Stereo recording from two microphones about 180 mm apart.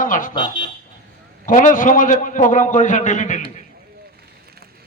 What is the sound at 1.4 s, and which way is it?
A man's voice, 45° left (ahead or behind).